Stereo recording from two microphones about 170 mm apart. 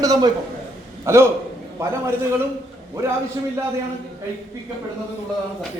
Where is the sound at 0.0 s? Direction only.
20° right (ahead or behind).